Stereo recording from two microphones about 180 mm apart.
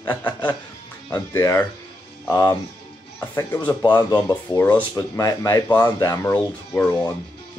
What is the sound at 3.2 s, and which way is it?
Speech, 10° left (ahead or behind).